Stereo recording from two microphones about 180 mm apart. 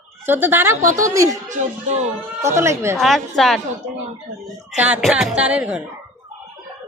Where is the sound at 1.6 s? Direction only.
45° right (ahead or behind).